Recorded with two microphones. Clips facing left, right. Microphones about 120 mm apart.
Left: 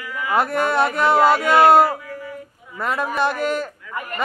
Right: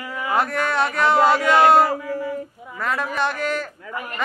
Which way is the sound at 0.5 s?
45° left (ahead or behind).